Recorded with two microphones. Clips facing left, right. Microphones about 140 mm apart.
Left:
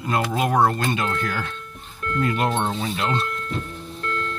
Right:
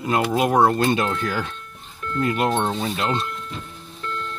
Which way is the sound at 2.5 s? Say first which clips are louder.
Right 2 dB; centre (ahead or behind).